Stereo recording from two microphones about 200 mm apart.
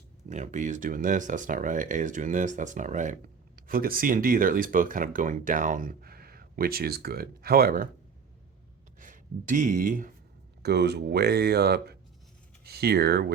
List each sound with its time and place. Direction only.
0.3 s speech: 35° right (ahead or behind)
9.0 s speech: 40° right (ahead or behind)
10.6 s speech: 55° right (ahead or behind)